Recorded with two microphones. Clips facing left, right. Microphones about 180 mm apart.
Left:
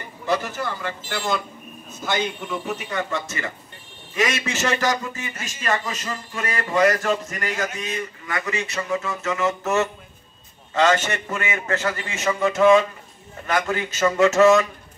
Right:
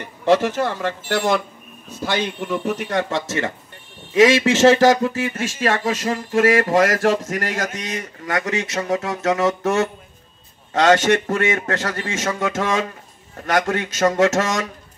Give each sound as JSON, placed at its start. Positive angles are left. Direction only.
{"t": 0.0, "sound": "a man's voice", "side_deg": -85}
{"t": 2.6, "sound": "a man's voice", "side_deg": -75}